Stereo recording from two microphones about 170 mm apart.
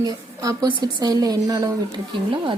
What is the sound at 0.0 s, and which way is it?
A woman's voice, 20° right (ahead or behind).